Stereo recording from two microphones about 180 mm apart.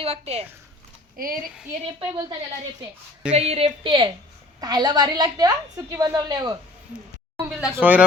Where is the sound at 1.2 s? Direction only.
55° right (ahead or behind).